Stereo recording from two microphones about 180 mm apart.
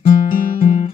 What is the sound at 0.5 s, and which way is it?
Music, 35° left (ahead or behind).